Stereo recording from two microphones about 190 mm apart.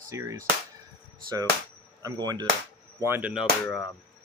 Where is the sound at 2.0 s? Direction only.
20° right (ahead or behind); by 3.5 s 5° right (ahead or behind).